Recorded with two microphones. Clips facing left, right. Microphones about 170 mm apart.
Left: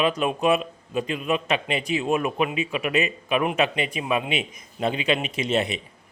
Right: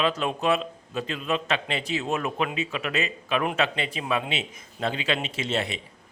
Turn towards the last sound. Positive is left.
turn(degrees=20)  # may be behind; listen again after turning